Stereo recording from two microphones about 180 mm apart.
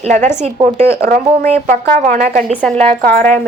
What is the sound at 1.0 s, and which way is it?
Speech, 55° right (ahead or behind).